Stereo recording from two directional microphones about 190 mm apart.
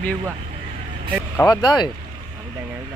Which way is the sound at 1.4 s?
20° left (ahead or behind).